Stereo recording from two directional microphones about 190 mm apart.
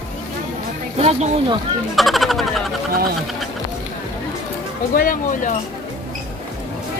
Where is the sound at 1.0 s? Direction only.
35° right (ahead or behind).